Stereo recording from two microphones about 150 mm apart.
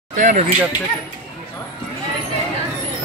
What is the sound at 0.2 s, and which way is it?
Speech, 55° right (ahead or behind).